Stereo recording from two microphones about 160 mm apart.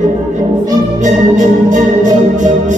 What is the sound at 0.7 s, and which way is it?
Music, 50° right (ahead or behind).